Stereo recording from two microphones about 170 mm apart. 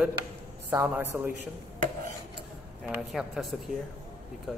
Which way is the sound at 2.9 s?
5° right (ahead or behind).